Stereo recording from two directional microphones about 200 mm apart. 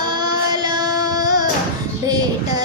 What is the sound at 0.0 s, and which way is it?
Female singing, 20° right (ahead or behind).